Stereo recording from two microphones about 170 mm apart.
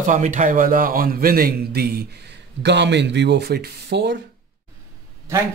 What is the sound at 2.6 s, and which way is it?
Speech, 90° right.